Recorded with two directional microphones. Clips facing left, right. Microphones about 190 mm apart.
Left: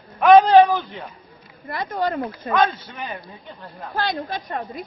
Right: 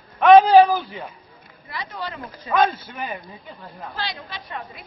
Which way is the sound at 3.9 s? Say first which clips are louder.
Left 9 dB; 50° left (ahead or behind).